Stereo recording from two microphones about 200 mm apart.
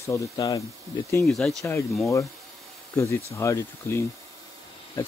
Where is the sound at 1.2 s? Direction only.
Centre (ahead or behind).